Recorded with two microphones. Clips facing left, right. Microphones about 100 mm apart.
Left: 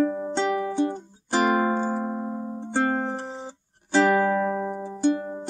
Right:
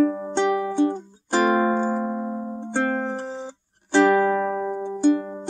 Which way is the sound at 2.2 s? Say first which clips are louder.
Right 2 dB; 10° right (ahead or behind).